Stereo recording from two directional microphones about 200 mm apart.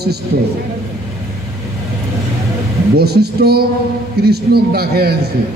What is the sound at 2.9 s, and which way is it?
A man's voice, 55° right (ahead or behind).